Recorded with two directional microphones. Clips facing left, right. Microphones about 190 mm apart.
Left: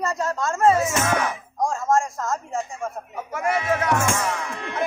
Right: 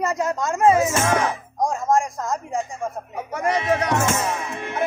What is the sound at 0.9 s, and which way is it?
Speech, 30° right (ahead or behind).